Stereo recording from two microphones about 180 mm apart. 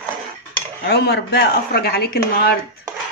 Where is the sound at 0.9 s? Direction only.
65° left (ahead or behind).